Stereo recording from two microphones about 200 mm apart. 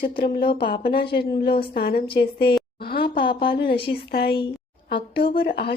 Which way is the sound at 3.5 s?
55° left (ahead or behind).